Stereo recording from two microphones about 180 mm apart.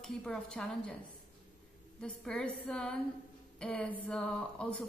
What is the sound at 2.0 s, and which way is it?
Speech, 5° left (ahead or behind).